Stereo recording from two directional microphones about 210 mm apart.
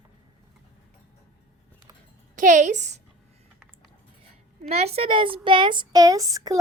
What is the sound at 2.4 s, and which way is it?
Speech, 35° right (ahead or behind).